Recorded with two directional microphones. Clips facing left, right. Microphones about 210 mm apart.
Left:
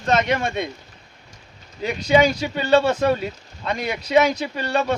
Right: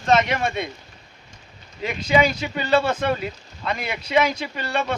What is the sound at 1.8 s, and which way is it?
Speech, 35° left (ahead or behind).